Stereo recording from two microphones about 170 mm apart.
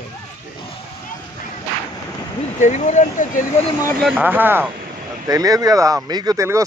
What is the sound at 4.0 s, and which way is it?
Speech, 5° right (ahead or behind).